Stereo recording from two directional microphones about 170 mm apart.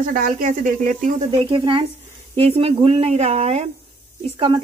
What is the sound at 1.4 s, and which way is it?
A woman's voice, 30° right (ahead or behind).